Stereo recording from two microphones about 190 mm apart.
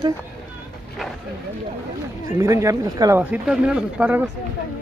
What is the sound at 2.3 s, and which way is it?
Speech, 15° right (ahead or behind).